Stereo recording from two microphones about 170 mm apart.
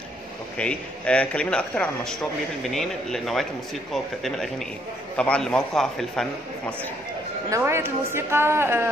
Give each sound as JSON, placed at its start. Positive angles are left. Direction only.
{"t": 0.6, "sound": "a man's voice", "side_deg": 5}
{"t": 7.4, "sound": "a woman's voice", "side_deg": -15}